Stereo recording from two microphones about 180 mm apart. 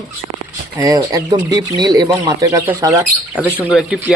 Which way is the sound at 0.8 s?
20° right (ahead or behind).